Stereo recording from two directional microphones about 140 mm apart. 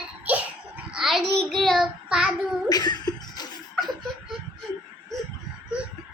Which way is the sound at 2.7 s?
30° left (ahead or behind).